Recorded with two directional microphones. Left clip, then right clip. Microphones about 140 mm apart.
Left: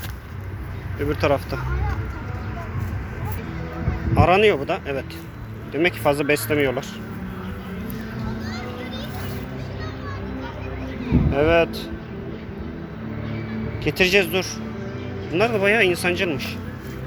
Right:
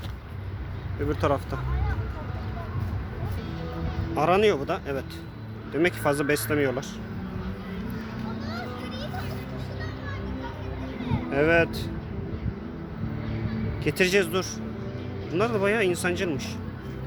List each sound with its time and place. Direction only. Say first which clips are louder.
0.9 s speech: left 5 dB; 5° right (ahead or behind)
4.1 s speech: left 5 dB; 15° right (ahead or behind)
5.7 s speech: left 4 dB; 30° right (ahead or behind)
11.3 s speech: left 3 dB; 30° right (ahead or behind)
13.8 s speech: left 5 dB; 25° right (ahead or behind)